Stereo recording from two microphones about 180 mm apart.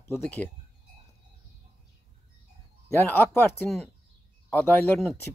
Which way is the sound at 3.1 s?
10° left (ahead or behind).